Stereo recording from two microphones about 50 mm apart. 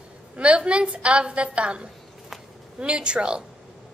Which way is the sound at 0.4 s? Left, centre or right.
Right.